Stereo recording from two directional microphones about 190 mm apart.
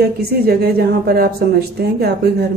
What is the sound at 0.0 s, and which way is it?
A woman's voice, 55° right (ahead or behind).